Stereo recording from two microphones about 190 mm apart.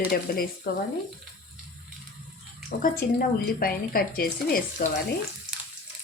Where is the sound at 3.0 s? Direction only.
55° left (ahead or behind).